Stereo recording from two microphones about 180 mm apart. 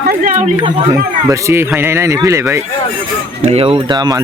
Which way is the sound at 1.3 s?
15° right (ahead or behind).